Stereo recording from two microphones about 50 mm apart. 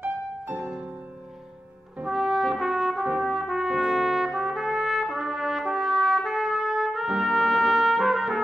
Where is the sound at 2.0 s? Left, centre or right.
Centre.